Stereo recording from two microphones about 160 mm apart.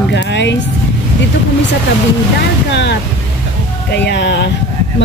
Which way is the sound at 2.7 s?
90° left.